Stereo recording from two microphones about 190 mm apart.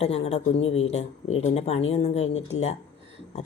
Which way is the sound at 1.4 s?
35° left (ahead or behind).